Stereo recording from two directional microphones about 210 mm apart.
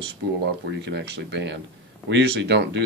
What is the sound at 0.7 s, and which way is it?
Speech, 55° right (ahead or behind).